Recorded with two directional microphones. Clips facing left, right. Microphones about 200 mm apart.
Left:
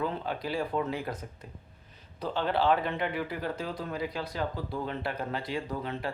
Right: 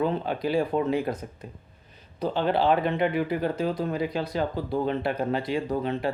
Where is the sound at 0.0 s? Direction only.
20° right (ahead or behind).